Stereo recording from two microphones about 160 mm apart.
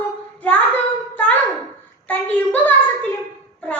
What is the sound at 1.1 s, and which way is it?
Music, 10° left (ahead or behind).